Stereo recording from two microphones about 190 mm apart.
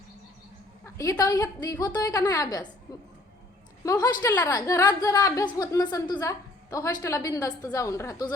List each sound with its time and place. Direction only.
0.9 s a woman's voice: 15° left (ahead or behind)
3.8 s a woman's voice: 20° left (ahead or behind)